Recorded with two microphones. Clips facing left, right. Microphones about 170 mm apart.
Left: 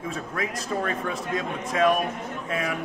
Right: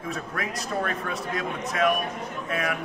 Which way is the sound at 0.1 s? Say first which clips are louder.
Right 1 dB; 25° left (ahead or behind).